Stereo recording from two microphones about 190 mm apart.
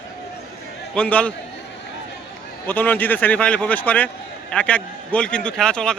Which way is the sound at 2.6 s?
10° left (ahead or behind).